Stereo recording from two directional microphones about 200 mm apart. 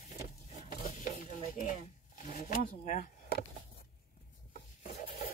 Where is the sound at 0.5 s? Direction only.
40° left (ahead or behind).